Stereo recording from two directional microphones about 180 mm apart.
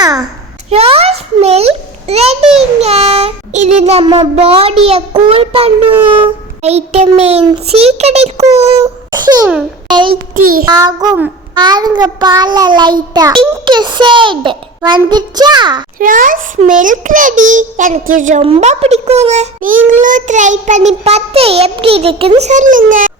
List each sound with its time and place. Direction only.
0.0 s a sound: 20° right (ahead or behind)
0.7 s a sound: 35° right (ahead or behind)
2.6 s child singing: 35° right (ahead or behind)
10.3 s a child's voice: 50° right (ahead or behind)
10.7 s child singing: 20° right (ahead or behind)
16.0 s a child's voice: 50° right (ahead or behind)
18.4 s child singing: 35° right (ahead or behind)